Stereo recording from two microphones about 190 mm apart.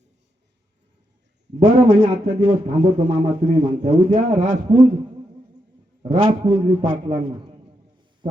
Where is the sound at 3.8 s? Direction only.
30° right (ahead or behind).